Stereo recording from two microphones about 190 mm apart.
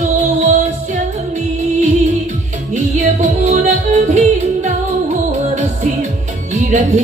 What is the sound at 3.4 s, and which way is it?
Music, 40° right (ahead or behind).